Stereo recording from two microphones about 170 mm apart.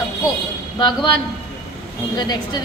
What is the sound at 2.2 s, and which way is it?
Speech, 25° left (ahead or behind).